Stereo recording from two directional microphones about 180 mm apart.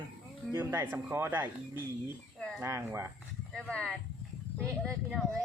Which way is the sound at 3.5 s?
5° left (ahead or behind).